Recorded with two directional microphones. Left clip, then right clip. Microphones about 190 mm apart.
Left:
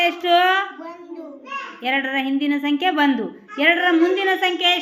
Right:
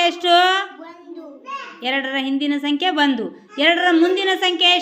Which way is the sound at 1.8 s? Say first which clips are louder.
Even; 10° right (ahead or behind).